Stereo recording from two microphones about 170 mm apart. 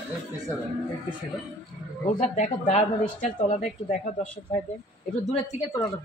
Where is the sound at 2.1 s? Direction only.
45° left (ahead or behind).